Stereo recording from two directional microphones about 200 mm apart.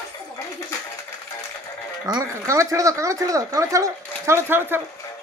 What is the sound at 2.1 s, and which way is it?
Speech, 20° right (ahead or behind).